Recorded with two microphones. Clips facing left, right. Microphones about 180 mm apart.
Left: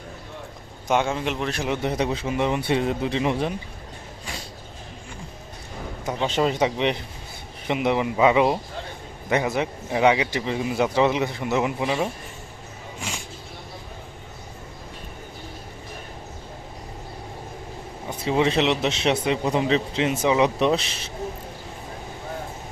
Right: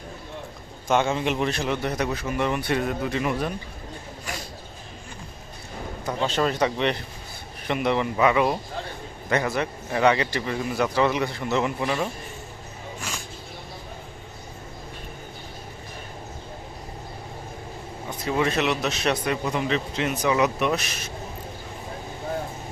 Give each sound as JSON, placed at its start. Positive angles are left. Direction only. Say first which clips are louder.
{"t": 0.9, "sound": "a man's voice", "louder": "right 1 dB", "side_deg": 10}
{"t": 1.5, "sound": "a man's voice", "louder": "left 1 dB", "side_deg": 10}
{"t": 6.2, "sound": "speech", "louder": "left 2 dB", "side_deg": 20}
{"t": 18.3, "sound": "a man's voice", "louder": "left 3 dB", "side_deg": 25}